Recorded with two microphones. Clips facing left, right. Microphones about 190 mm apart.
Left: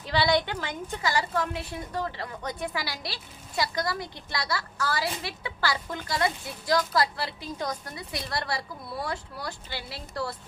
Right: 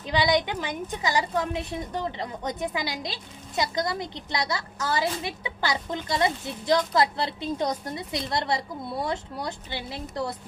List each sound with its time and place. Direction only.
0.0 s a woman's voice: 20° right (ahead or behind)